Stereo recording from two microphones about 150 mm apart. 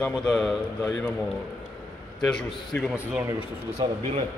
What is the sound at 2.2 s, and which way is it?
Speech, 5° left (ahead or behind).